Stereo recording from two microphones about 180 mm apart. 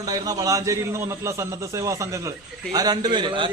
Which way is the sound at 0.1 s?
20° right (ahead or behind).